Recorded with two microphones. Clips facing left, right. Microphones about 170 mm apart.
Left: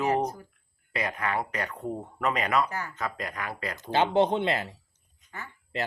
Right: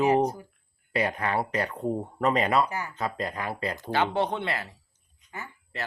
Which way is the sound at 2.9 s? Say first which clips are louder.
Right 3 dB; 30° right (ahead or behind).